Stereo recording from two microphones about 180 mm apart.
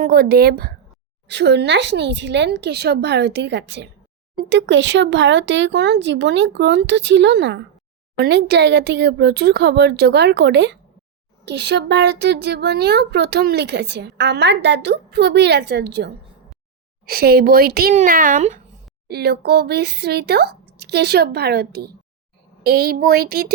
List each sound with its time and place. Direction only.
0.0 s speech: 55° right (ahead or behind)
1.3 s speech: 70° right (ahead or behind)
4.4 s speech: 90° right; by 16.1 s 70° right (ahead or behind)
17.1 s speech: 55° right (ahead or behind)
19.0 s speech: 65° right (ahead or behind)